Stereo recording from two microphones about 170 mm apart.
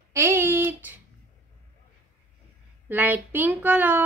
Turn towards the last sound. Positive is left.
turn(degrees=-10)  # may be behind; listen again after turning